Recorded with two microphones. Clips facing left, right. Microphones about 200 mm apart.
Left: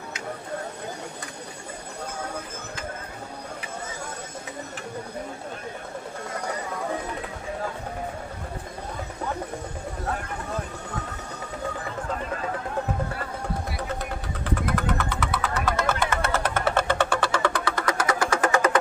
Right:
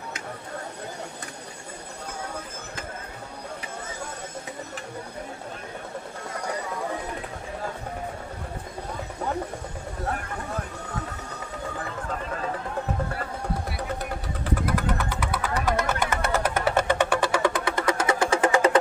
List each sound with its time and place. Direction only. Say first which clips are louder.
14.7 s vehicle: even; 10° right (ahead or behind); by 18.8 s 30° right (ahead or behind)